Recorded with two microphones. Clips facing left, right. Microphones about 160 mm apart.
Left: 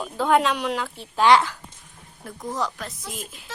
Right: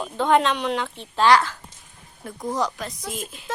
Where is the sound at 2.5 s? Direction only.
Centre (ahead or behind).